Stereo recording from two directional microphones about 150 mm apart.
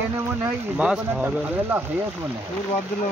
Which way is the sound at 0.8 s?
10° right (ahead or behind).